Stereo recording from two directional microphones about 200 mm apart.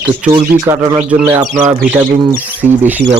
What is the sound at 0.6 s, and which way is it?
Speech, 15° right (ahead or behind).